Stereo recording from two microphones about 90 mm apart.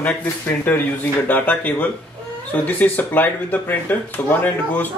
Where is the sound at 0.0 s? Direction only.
20° left (ahead or behind).